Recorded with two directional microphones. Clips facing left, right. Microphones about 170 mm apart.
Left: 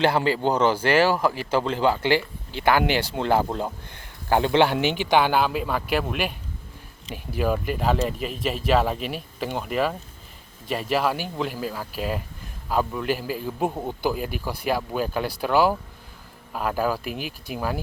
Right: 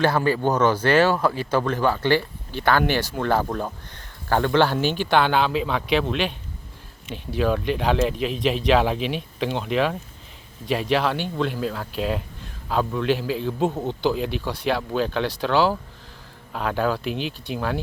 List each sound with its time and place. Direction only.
0.0 s a man's voice: 15° left (ahead or behind)
7.3 s a man's voice: 5° left (ahead or behind)